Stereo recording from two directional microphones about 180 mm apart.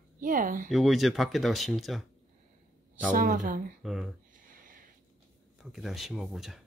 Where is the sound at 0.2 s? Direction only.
50° right (ahead or behind).